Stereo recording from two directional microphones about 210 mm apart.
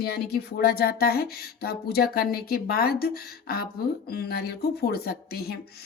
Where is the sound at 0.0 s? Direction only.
50° left (ahead or behind).